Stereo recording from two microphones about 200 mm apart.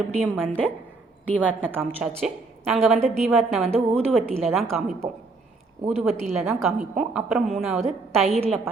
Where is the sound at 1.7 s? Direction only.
5° left (ahead or behind).